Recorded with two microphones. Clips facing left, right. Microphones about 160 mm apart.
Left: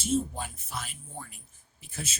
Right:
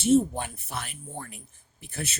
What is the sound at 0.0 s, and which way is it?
Speech, 65° right (ahead or behind).